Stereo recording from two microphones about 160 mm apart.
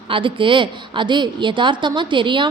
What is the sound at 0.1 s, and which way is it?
A woman's voice, 30° right (ahead or behind).